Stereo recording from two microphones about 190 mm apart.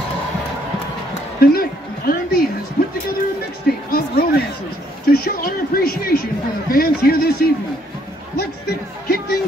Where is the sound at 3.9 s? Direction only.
50° left (ahead or behind).